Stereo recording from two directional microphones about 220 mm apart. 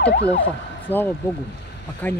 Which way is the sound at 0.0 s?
50° left (ahead or behind).